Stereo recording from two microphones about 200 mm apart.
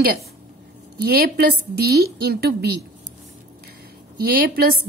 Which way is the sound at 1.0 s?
50° right (ahead or behind).